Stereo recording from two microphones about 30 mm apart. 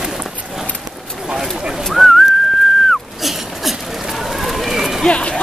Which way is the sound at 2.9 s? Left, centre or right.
Centre.